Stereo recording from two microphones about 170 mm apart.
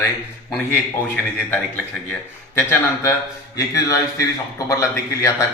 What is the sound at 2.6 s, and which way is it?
Speech, 15° left (ahead or behind).